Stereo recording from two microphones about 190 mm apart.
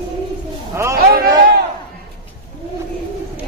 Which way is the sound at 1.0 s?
55° right (ahead or behind).